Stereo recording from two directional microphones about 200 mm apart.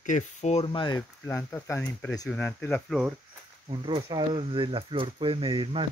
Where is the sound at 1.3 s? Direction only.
10° left (ahead or behind).